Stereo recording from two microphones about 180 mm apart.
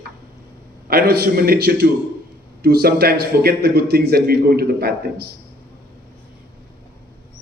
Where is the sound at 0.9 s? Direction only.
60° right (ahead or behind).